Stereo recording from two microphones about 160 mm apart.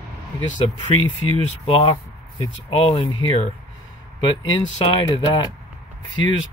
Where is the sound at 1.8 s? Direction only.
30° left (ahead or behind).